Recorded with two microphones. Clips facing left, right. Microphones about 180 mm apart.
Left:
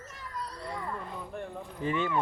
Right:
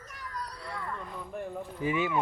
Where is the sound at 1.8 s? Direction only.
10° right (ahead or behind).